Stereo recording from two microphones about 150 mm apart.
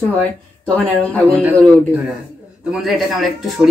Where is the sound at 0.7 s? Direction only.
5° left (ahead or behind).